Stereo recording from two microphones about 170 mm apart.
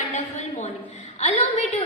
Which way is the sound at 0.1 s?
45° left (ahead or behind).